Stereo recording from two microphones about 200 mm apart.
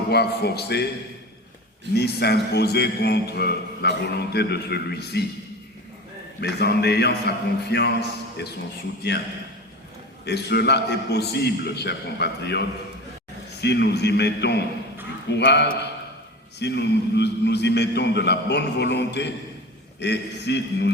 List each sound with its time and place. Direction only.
0.1 s a man's voice: 55° left (ahead or behind)
1.9 s a man's voice: 55° left (ahead or behind)
6.4 s a man's voice: 55° left (ahead or behind)
10.2 s a man's voice: 55° left (ahead or behind)